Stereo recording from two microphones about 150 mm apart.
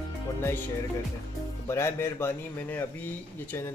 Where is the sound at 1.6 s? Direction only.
15° left (ahead or behind).